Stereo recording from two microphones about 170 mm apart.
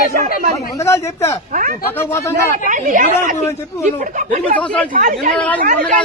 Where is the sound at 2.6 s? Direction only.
50° right (ahead or behind).